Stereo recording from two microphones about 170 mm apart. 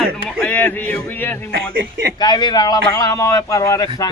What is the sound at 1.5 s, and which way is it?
Speech, 70° right (ahead or behind).